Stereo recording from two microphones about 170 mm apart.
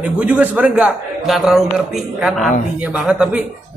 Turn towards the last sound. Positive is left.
turn(degrees=-5)  # may be behind; listen again after turning